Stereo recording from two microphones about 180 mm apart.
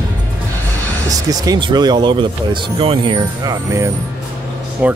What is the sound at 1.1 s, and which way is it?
Speech, 20° right (ahead or behind).